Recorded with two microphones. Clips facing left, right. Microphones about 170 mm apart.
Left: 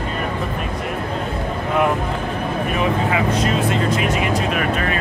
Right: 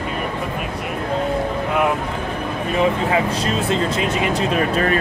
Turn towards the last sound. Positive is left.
turn(degrees=-30)  # may be behind; listen again after turning